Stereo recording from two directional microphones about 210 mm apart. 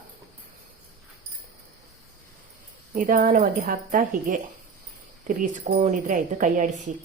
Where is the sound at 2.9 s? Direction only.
40° right (ahead or behind).